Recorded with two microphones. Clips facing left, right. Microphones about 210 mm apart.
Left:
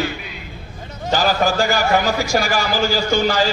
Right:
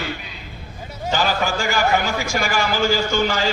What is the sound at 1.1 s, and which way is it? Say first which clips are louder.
A man's voice: left 3 dB; 35° left (ahead or behind).